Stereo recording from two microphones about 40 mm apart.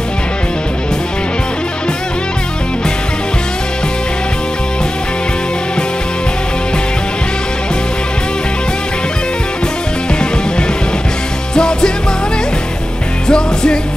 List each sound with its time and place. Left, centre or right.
11.5 s music: centre
13.3 s music: left